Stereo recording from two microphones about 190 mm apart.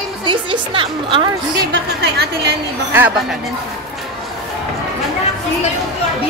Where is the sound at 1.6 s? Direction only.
60° right (ahead or behind).